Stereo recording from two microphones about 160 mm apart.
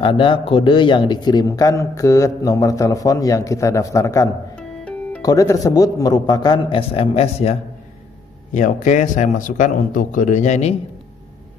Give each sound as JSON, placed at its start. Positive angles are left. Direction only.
{"t": 0.0, "sound": "speech", "side_deg": 30}
{"t": 4.6, "sound": "music", "side_deg": 5}
{"t": 5.2, "sound": "speech", "side_deg": 20}
{"t": 8.5, "sound": "a man's voice", "side_deg": 50}